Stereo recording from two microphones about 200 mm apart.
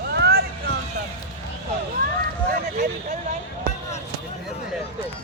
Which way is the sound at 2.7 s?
40° right (ahead or behind).